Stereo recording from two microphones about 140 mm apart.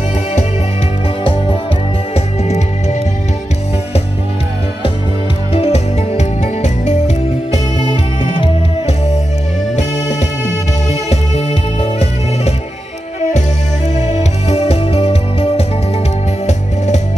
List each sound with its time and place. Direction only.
1.2 s music: 40° left (ahead or behind)
5.5 s music: 45° left (ahead or behind)
10.9 s music: 50° left (ahead or behind)
13.9 s music: 55° left (ahead or behind)
16.4 s music: 55° left (ahead or behind)